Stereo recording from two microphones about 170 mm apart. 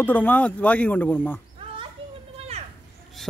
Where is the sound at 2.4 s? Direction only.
40° right (ahead or behind).